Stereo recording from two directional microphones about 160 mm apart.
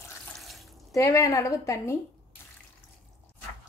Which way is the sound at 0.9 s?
20° left (ahead or behind).